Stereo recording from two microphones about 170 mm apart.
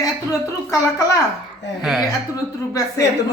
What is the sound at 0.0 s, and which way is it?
A woman's voice, 20° left (ahead or behind).